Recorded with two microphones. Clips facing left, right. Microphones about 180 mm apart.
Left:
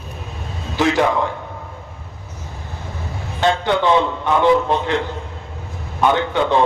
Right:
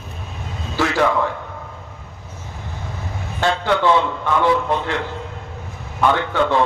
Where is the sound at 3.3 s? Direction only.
20° left (ahead or behind).